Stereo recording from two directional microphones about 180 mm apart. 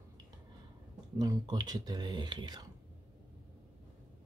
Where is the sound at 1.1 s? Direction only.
20° right (ahead or behind).